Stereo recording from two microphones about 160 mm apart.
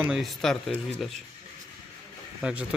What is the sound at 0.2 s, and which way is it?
Speech, centre (ahead or behind).